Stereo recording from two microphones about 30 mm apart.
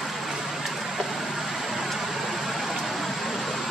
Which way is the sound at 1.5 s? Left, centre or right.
Centre.